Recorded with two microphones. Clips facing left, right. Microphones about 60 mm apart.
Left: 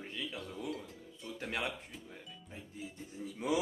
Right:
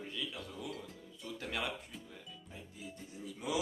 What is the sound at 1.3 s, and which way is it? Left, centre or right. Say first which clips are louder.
Speech: left 1 dB; left.